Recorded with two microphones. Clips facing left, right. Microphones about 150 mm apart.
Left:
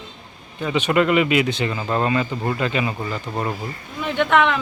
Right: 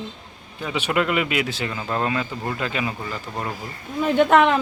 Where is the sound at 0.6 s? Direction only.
5° right (ahead or behind).